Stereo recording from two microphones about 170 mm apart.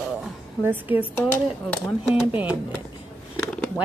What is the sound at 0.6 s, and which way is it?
Speech, 10° right (ahead or behind).